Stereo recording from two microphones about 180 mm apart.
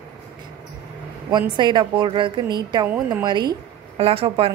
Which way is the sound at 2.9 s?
5° right (ahead or behind).